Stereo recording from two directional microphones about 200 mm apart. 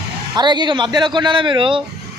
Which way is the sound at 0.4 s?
20° right (ahead or behind).